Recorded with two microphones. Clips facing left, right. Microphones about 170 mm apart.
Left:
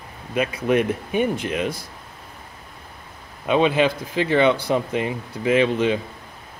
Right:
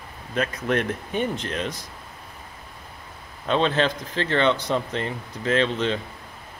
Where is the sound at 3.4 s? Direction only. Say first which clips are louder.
Left 4 dB; 10° left (ahead or behind).